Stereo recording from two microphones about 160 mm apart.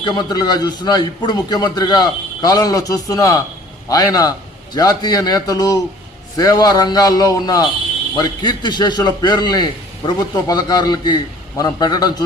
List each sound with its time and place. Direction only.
0.0 s a man's voice: 25° left (ahead or behind)